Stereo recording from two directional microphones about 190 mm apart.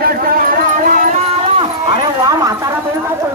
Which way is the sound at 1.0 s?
35° right (ahead or behind).